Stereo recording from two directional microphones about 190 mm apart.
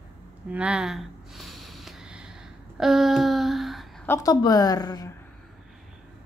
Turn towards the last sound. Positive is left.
turn(degrees=20)  # may be behind; listen again after turning